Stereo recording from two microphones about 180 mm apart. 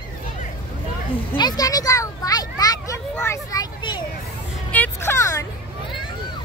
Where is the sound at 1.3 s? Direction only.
25° left (ahead or behind).